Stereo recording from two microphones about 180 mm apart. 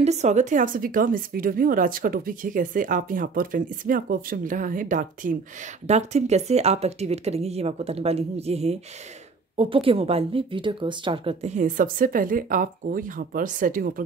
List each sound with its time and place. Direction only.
0.0 s speech: 40° right (ahead or behind)